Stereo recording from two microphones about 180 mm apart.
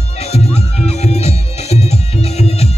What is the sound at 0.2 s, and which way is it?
Music, 35° left (ahead or behind).